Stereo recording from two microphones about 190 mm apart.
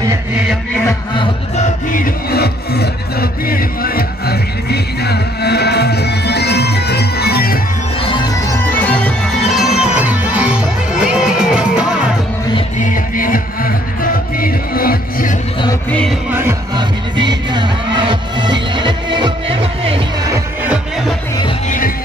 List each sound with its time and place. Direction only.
0.8 s music: 25° left (ahead or behind)
1.9 s music: 45° left (ahead or behind)
8.0 s music: 25° left (ahead or behind)
8.4 s music: 5° left (ahead or behind)
12.5 s music: 40° left (ahead or behind)
15.9 s music: 5° left (ahead or behind)
16.3 s music: 10° right (ahead or behind)
16.7 s music: 25° right (ahead or behind)
20.2 s music: 10° right (ahead or behind)
21.6 s music: 45° left (ahead or behind)